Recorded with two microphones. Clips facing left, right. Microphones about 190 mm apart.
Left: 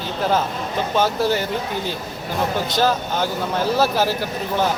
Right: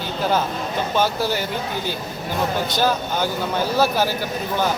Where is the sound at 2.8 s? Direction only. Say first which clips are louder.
Left 2 dB; centre (ahead or behind).